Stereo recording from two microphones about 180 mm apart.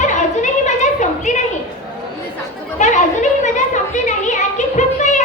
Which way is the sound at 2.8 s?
40° left (ahead or behind).